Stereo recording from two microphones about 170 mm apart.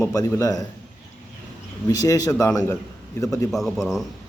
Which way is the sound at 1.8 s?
20° left (ahead or behind).